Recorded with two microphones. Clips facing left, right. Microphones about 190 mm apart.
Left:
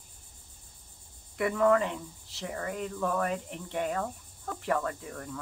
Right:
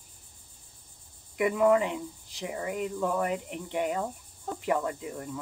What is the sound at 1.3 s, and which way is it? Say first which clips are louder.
Speech: right 2 dB; 15° right (ahead or behind).